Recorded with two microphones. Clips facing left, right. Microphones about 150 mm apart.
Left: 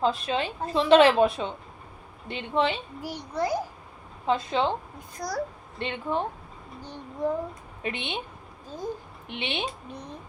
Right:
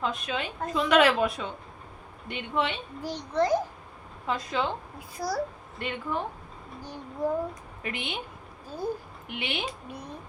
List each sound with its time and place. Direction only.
0.0 s a woman's voice: 30° left (ahead or behind)
3.0 s a child's voice: 10° left (ahead or behind)
4.3 s a woman's voice: 25° left (ahead or behind)
4.9 s a child's voice: 5° right (ahead or behind)
5.8 s a woman's voice: 25° left (ahead or behind)
7.2 s a child's voice: 10° right (ahead or behind)
7.8 s a woman's voice: 25° left (ahead or behind)
8.6 s speech: 10° right (ahead or behind)
9.2 s a woman's voice: 25° left (ahead or behind)